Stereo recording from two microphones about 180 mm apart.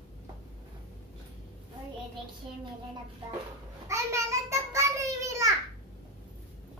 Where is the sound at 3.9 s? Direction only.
15° right (ahead or behind).